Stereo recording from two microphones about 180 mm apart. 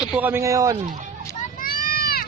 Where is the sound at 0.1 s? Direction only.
10° right (ahead or behind).